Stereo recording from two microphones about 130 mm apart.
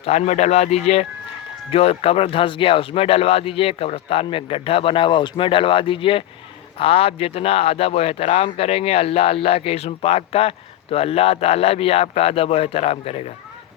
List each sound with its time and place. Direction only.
0.0 s speech: 55° left (ahead or behind)